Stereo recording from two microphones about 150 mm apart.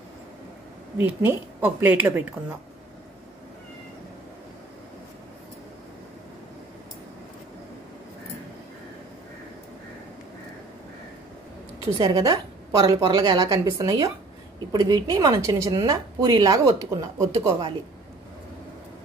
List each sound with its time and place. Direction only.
0.9 s a woman's voice: 15° right (ahead or behind)
12.0 s a woman's voice: 25° right (ahead or behind)